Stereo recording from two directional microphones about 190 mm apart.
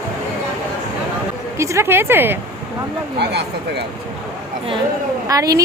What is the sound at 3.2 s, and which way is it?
Speech, 60° right (ahead or behind).